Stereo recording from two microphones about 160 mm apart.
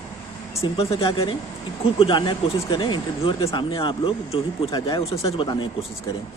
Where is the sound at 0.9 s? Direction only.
35° left (ahead or behind).